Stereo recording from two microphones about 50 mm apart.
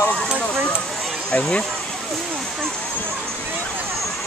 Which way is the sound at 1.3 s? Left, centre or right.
Left.